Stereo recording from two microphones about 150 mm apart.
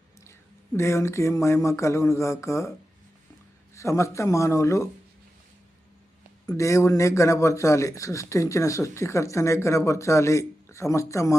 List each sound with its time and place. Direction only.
0.3 s speech: 20° left (ahead or behind)
3.8 s speech: 20° left (ahead or behind)
6.6 s speech: 20° left (ahead or behind)